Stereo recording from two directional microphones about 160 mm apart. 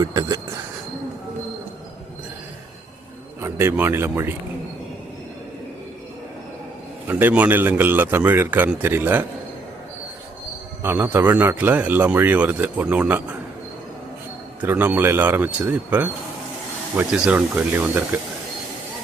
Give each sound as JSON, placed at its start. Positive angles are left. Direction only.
{"t": 0.0, "sound": "speech", "side_deg": -25}
{"t": 3.4, "sound": "speech", "side_deg": -15}
{"t": 7.1, "sound": "speech", "side_deg": -10}
{"t": 10.8, "sound": "speech", "side_deg": -15}
{"t": 14.6, "sound": "speech", "side_deg": -10}